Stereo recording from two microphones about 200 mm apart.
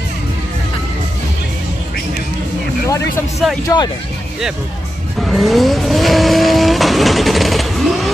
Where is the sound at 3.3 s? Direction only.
Centre (ahead or behind).